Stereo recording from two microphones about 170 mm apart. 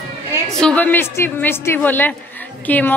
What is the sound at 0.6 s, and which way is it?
A woman's voice, 10° left (ahead or behind).